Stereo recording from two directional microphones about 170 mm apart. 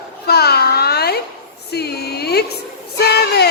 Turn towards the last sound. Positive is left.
turn(degrees=70)  # may be behind; listen again after turning